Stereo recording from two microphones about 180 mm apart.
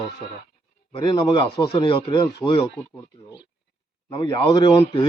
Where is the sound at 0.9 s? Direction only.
20° left (ahead or behind).